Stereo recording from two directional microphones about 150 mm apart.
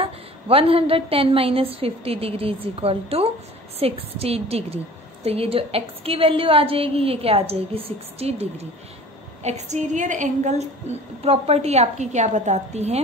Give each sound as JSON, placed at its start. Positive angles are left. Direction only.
{"t": 0.0, "sound": "a woman's voice", "side_deg": -40}